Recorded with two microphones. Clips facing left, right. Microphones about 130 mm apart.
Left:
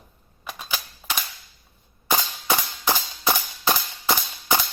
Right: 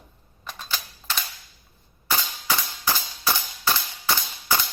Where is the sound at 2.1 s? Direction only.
20° left (ahead or behind).